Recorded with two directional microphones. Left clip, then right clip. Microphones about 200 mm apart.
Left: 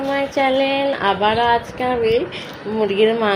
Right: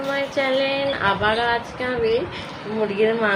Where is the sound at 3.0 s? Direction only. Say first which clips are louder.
Left 4 dB; 40° left (ahead or behind).